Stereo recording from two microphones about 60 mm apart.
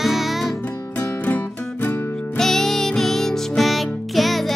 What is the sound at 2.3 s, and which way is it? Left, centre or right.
Music, centre.